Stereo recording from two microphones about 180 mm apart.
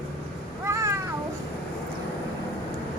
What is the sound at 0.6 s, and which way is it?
Cat, 15° right (ahead or behind).